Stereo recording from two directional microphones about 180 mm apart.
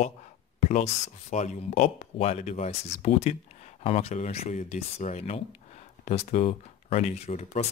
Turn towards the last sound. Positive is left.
turn(degrees=35)  # may be behind; listen again after turning